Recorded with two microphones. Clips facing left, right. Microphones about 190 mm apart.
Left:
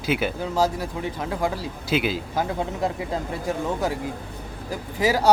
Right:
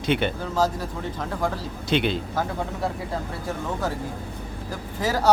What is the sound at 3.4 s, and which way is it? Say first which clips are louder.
Speech: left 3 dB; 15° left (ahead or behind).